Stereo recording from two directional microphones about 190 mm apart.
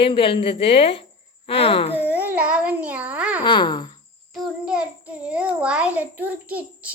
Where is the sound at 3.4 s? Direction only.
25° left (ahead or behind).